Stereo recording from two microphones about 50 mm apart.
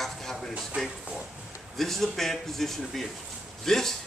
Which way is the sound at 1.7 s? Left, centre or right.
Centre.